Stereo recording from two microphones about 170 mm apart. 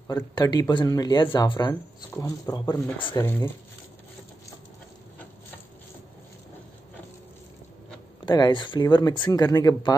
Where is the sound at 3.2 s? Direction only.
15° left (ahead or behind).